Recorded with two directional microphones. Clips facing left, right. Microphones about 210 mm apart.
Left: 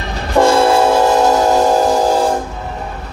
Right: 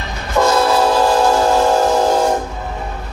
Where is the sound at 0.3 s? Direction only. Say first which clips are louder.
Left 3 dB; 30° left (ahead or behind).